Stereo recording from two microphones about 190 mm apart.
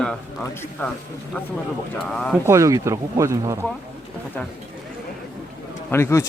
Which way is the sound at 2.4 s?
15° right (ahead or behind).